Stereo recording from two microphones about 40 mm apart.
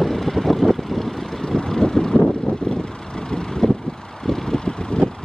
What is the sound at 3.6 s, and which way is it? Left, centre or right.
Vehicle, left.